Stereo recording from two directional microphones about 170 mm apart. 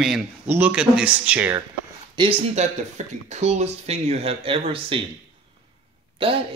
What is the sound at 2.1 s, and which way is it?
Speech, 30° right (ahead or behind).